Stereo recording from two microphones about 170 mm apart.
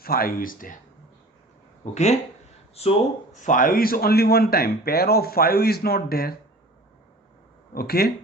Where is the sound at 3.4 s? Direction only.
50° left (ahead or behind).